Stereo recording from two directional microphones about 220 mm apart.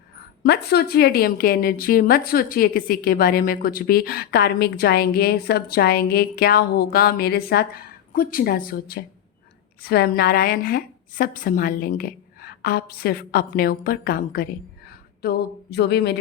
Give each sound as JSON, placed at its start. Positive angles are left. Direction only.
{"t": 0.4, "sound": "a woman's voice", "side_deg": 45}